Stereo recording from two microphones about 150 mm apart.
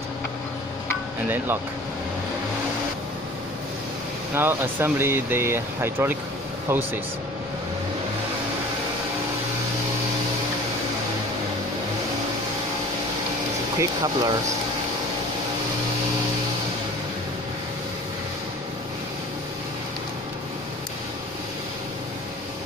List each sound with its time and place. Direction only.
4.4 s speech: 15° right (ahead or behind)
13.7 s speech: 25° right (ahead or behind)